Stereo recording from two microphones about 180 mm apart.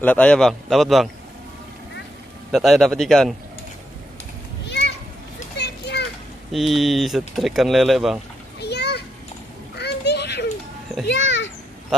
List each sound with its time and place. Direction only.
0.0 s speech: 5° left (ahead or behind)
2.5 s speech: centre (ahead or behind)
4.6 s children playing: 75° left (ahead or behind)
6.5 s speech: centre (ahead or behind)
8.5 s children playing: 65° left (ahead or behind)
9.8 s a sound: 65° left (ahead or behind)